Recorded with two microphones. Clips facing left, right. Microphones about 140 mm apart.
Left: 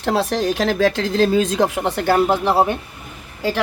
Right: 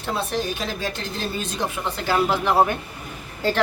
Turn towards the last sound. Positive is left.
turn(degrees=10)  # may be behind; listen again after turning